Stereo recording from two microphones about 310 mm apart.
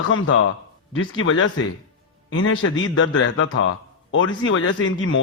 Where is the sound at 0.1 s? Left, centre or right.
Left.